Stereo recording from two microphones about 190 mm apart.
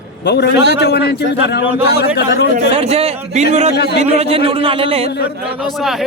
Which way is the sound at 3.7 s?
60° left (ahead or behind).